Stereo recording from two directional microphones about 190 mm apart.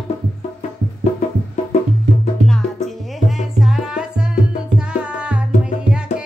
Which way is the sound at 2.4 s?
Centre (ahead or behind).